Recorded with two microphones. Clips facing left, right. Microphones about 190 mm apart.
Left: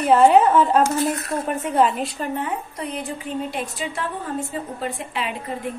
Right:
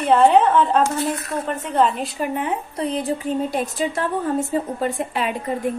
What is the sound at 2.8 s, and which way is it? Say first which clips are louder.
A woman's voice: right 6 dB; 30° right (ahead or behind).